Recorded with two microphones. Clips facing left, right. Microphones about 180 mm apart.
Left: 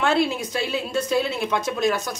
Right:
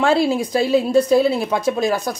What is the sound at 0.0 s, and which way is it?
Speech, 35° right (ahead or behind).